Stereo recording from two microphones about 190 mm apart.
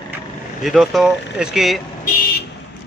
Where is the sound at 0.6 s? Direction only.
Centre (ahead or behind).